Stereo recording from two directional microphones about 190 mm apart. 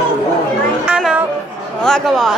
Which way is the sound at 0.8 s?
5° right (ahead or behind).